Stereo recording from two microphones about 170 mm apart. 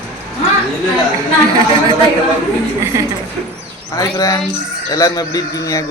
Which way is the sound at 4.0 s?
20° left (ahead or behind).